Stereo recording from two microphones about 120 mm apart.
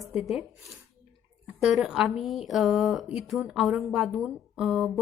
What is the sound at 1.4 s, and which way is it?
A woman's voice, 5° right (ahead or behind).